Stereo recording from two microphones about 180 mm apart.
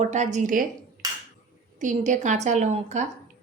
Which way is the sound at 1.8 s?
45° right (ahead or behind).